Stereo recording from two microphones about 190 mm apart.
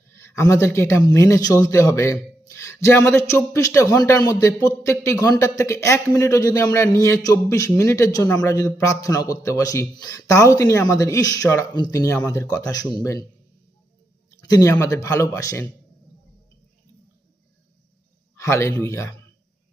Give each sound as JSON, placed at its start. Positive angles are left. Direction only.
{"t": 0.2, "sound": "a man's voice", "side_deg": 15}
{"t": 14.3, "sound": "a man's voice", "side_deg": 15}
{"t": 18.3, "sound": "a man's voice", "side_deg": 15}